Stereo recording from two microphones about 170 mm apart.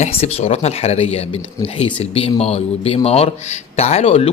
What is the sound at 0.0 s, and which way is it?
A man's voice, 35° left (ahead or behind).